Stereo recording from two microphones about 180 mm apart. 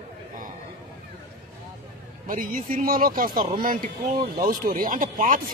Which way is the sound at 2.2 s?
50° right (ahead or behind).